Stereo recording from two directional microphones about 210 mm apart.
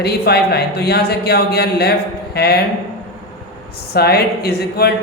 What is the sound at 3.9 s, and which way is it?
Speech, 50° left (ahead or behind).